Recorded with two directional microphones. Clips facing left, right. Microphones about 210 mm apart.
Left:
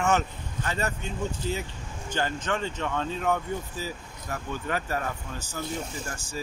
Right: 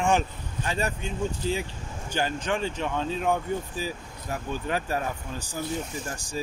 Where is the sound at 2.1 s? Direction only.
10° right (ahead or behind).